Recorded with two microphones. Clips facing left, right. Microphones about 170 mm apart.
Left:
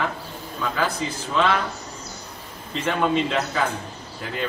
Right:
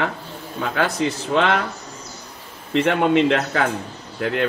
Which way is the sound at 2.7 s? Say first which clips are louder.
Right 5 dB; 65° right (ahead or behind).